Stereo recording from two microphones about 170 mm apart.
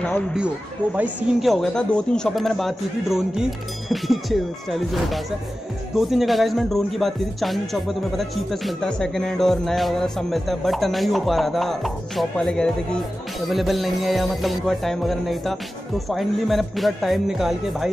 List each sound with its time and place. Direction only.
0.9 s speech: 5° right (ahead or behind)